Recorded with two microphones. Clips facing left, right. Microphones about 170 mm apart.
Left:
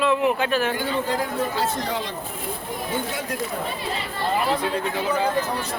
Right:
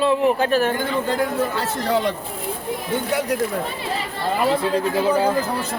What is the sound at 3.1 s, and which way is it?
Speech, 70° right (ahead or behind).